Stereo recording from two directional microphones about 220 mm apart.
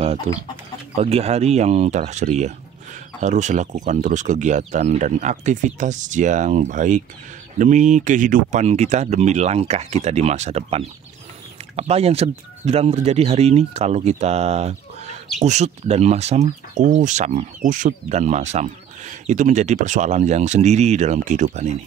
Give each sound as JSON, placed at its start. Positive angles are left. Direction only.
{"t": 0.9, "sound": "speech", "side_deg": -25}